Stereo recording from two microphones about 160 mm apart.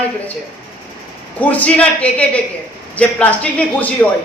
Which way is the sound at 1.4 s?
10° left (ahead or behind).